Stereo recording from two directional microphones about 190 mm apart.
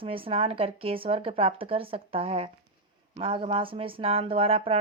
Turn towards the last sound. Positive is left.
turn(degrees=-30)  # may be behind; listen again after turning